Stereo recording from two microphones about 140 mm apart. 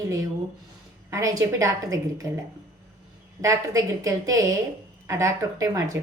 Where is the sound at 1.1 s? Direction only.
20° right (ahead or behind).